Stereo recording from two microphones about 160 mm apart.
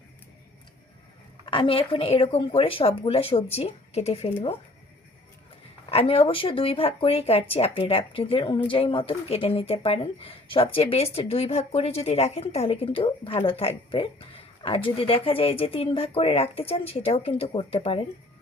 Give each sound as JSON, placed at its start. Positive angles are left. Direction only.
{"t": 1.5, "sound": "speech", "side_deg": 35}
{"t": 5.9, "sound": "speech", "side_deg": 35}